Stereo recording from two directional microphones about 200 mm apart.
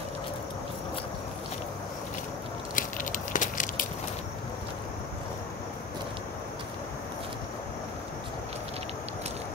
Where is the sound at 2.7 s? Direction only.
40° left (ahead or behind).